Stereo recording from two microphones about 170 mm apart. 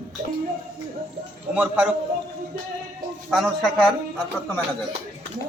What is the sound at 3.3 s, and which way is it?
Speech, centre (ahead or behind).